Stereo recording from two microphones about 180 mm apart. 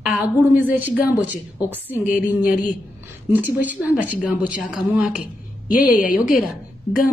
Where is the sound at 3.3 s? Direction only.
10° right (ahead or behind).